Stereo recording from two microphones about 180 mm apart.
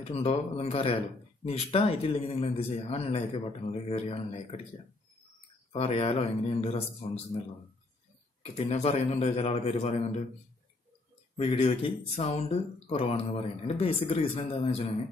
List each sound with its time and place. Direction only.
0.0 s speech: 35° left (ahead or behind)
5.7 s speech: 35° left (ahead or behind)
11.3 s speech: 35° left (ahead or behind)